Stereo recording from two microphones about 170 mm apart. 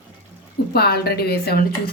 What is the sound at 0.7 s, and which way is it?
Speech, 65° left (ahead or behind).